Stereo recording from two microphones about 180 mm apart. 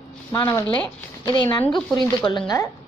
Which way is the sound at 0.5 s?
10° left (ahead or behind).